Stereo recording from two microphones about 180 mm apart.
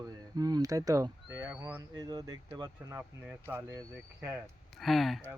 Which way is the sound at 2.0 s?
20° right (ahead or behind).